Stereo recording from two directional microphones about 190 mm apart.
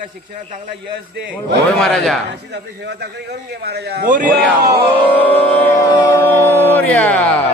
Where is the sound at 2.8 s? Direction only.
60° right (ahead or behind).